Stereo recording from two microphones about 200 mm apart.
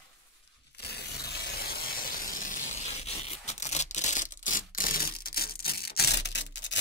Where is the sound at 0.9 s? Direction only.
55° left (ahead or behind).